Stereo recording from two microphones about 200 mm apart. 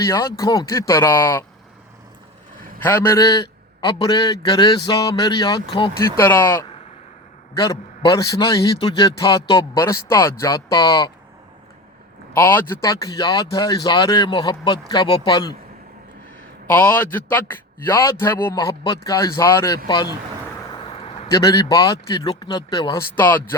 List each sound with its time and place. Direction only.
0.0 s a man's voice: 15° left (ahead or behind)
2.8 s speech: 10° left (ahead or behind)
6.0 s a man's voice: 10° left (ahead or behind)
12.3 s speech: 10° left (ahead or behind)
16.7 s a man's voice: 10° left (ahead or behind)
18.5 s a man's voice: 20° left (ahead or behind)
23.1 s a man's voice: 10° left (ahead or behind)